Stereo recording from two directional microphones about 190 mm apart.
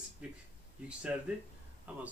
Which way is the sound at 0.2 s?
5° right (ahead or behind).